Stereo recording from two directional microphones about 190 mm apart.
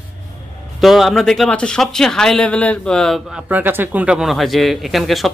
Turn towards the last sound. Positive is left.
turn(degrees=0)  # may be behind; listen again after turning